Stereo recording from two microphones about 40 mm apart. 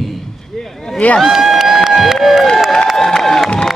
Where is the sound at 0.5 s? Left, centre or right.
Centre.